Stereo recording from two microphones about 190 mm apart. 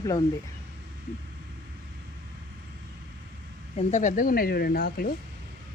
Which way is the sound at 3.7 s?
40° left (ahead or behind).